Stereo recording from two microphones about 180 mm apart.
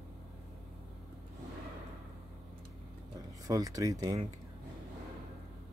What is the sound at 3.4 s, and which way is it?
Speech, 20° right (ahead or behind).